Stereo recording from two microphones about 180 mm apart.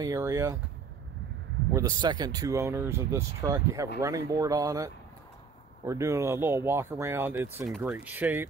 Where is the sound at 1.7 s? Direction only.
20° right (ahead or behind).